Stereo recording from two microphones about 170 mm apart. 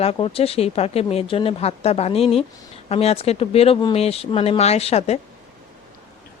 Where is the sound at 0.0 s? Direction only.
35° left (ahead or behind).